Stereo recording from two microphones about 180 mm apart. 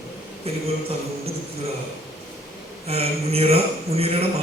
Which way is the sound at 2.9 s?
35° right (ahead or behind).